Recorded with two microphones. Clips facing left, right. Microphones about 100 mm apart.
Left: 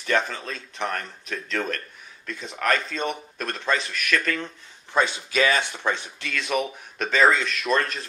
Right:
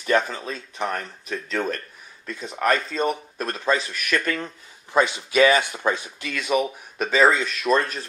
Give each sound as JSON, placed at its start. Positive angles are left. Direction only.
{"t": 0.0, "sound": "speech", "side_deg": -5}